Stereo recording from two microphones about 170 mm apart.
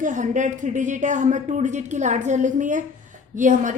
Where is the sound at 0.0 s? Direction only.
45° right (ahead or behind).